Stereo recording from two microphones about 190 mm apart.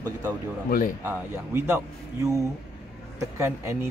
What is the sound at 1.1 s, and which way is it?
Speech, 15° right (ahead or behind).